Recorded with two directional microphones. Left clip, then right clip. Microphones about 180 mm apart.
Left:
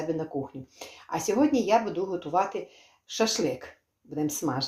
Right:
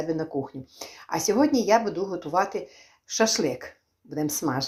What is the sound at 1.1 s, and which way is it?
Speech, 30° right (ahead or behind).